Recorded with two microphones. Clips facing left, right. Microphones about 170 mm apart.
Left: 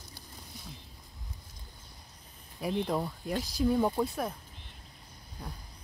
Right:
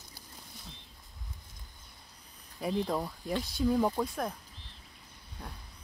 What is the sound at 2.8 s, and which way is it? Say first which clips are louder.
Speech: left 1 dB; centre (ahead or behind).